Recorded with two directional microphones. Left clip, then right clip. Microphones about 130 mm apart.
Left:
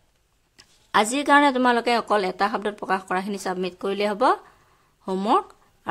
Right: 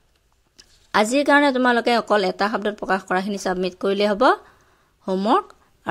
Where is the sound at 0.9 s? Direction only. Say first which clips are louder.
Right 1 dB; 15° right (ahead or behind).